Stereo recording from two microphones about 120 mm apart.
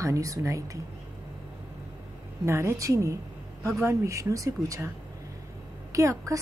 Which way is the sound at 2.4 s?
25° right (ahead or behind).